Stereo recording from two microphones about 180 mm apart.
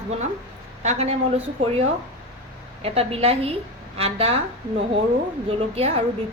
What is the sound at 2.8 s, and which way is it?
A woman's voice, 35° right (ahead or behind).